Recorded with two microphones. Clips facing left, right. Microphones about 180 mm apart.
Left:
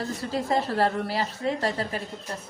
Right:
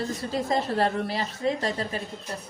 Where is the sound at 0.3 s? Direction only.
20° right (ahead or behind).